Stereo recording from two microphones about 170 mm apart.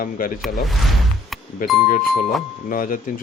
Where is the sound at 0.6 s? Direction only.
Centre (ahead or behind).